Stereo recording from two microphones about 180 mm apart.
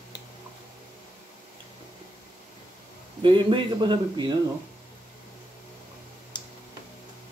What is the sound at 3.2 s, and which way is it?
A man's voice, 25° right (ahead or behind).